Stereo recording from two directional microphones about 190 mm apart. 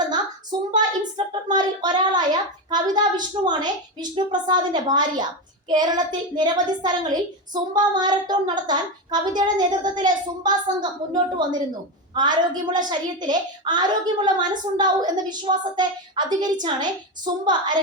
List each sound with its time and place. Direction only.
0.7 s speech: 25° right (ahead or behind)